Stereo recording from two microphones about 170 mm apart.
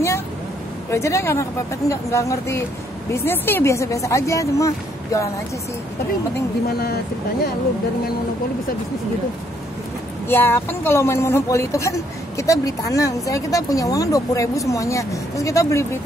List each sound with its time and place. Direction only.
0.8 s speech: 15° left (ahead or behind)
10.2 s speech: 15° left (ahead or behind)